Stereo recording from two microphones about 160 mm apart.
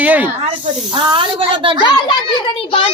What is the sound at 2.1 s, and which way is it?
Speech, 30° left (ahead or behind).